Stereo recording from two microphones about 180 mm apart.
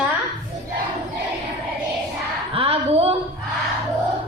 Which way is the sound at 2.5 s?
30° right (ahead or behind).